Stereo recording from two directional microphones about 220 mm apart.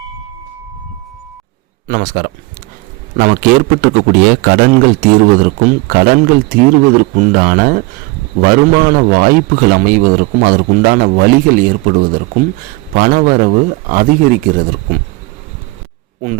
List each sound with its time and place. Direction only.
1.9 s a man's voice: 40° right (ahead or behind)